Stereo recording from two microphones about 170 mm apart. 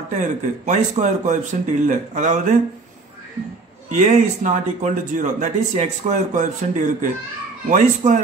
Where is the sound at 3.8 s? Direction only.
45° right (ahead or behind).